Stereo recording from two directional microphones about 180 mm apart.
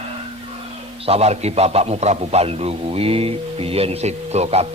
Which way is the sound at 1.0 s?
35° right (ahead or behind).